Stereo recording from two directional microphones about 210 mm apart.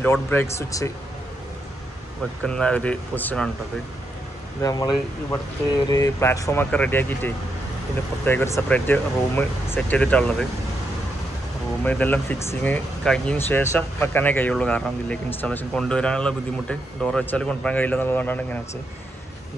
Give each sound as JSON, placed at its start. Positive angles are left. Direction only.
{"t": 0.0, "sound": "speech", "side_deg": 10}
{"t": 2.4, "sound": "speech", "side_deg": 5}
{"t": 4.6, "sound": "speech", "side_deg": 15}
{"t": 11.8, "sound": "speech", "side_deg": 5}